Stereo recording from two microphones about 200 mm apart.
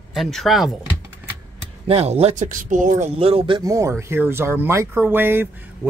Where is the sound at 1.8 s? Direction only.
30° right (ahead or behind).